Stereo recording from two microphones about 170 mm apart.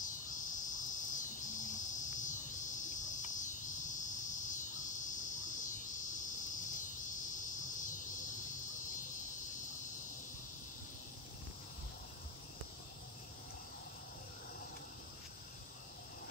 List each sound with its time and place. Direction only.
0.0 s cricket: 50° left (ahead or behind)
7.3 s insect: 50° left (ahead or behind)